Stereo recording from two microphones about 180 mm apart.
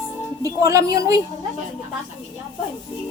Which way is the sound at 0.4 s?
15° right (ahead or behind).